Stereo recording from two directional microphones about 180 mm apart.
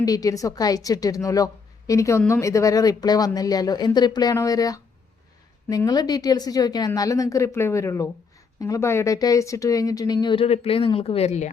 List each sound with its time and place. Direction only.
0.0 s speech: 20° left (ahead or behind); by 11.5 s 40° left (ahead or behind)